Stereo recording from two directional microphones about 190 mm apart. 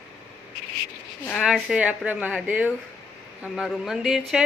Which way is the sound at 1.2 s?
5° left (ahead or behind).